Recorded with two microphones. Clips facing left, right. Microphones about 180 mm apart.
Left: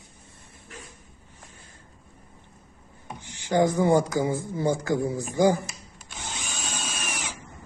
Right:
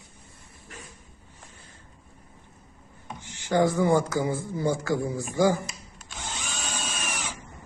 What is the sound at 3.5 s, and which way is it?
A man's voice, 15° left (ahead or behind).